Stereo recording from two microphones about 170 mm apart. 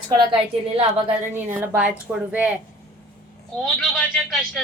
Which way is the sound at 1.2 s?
15° right (ahead or behind).